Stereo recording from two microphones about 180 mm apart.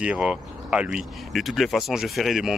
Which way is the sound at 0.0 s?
5° right (ahead or behind).